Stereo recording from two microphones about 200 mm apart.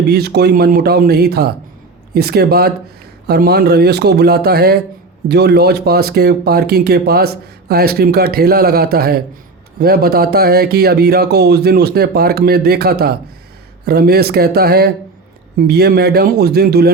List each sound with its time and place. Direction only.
0.1 s speech: 55° right (ahead or behind)